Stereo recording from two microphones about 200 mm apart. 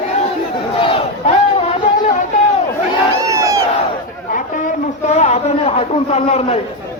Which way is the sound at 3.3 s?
15° right (ahead or behind).